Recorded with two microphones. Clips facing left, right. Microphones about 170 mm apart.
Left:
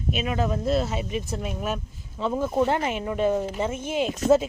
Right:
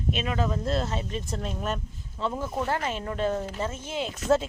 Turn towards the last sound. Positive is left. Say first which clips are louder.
# left 5 dB
turn(degrees=15)  # may be behind; listen again after turning